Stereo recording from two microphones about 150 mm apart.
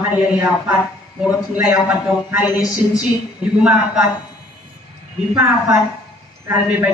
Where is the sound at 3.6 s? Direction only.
5° right (ahead or behind).